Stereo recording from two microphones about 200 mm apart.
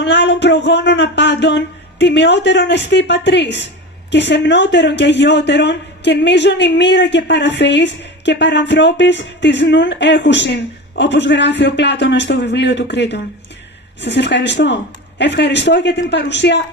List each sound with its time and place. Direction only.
0.0 s speech: 60° left (ahead or behind)